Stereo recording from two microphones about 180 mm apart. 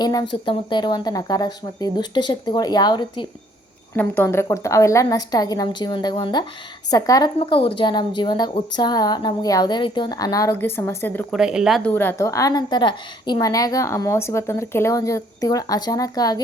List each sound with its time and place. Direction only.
0.0 s a woman's voice: 20° left (ahead or behind)
3.9 s a woman's voice: 10° left (ahead or behind)
11.3 s speech: 5° right (ahead or behind)
11.8 s a woman's voice: 10° left (ahead or behind)